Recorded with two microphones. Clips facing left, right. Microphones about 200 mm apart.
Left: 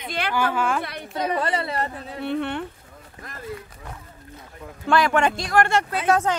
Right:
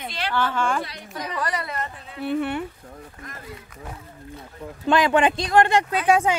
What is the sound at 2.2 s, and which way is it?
Speech, 5° right (ahead or behind).